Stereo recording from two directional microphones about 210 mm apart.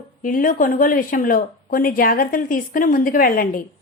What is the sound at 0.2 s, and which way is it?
Speech, 40° left (ahead or behind).